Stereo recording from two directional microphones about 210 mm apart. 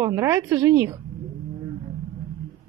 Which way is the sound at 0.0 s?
15° right (ahead or behind).